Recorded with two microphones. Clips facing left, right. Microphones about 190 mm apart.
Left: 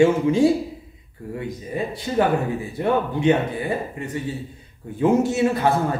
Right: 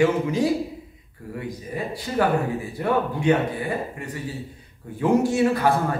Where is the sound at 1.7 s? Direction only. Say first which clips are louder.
Left 3 dB; 25° left (ahead or behind).